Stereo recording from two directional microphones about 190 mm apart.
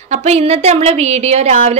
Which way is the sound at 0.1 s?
35° right (ahead or behind).